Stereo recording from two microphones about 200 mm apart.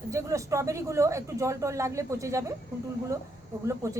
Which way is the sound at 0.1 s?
15° right (ahead or behind).